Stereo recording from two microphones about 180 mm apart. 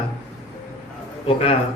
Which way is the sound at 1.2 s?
35° left (ahead or behind).